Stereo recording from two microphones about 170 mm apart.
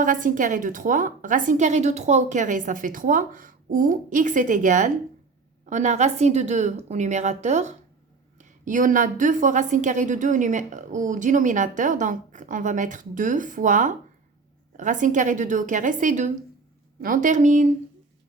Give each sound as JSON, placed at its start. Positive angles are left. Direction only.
{"t": 0.0, "sound": "a woman's voice", "side_deg": -50}